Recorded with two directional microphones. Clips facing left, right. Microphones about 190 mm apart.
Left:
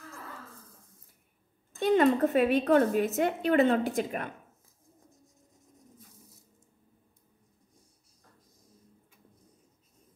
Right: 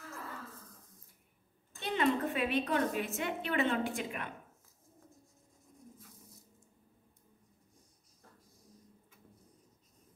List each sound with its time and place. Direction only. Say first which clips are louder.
1.8 s a woman's voice: left 9 dB; 45° left (ahead or behind)